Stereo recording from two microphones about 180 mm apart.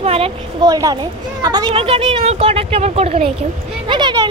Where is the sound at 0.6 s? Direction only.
20° right (ahead or behind).